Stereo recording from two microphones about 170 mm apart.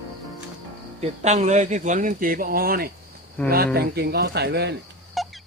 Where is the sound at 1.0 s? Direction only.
40° right (ahead or behind); by 2.9 s 60° right (ahead or behind).